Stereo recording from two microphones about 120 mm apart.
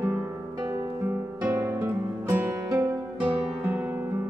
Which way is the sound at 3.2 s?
10° right (ahead or behind).